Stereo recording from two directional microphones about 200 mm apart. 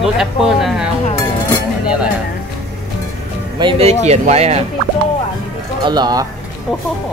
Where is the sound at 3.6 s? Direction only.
30° right (ahead or behind).